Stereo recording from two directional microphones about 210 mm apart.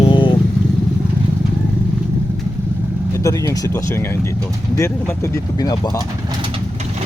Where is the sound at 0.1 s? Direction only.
25° left (ahead or behind).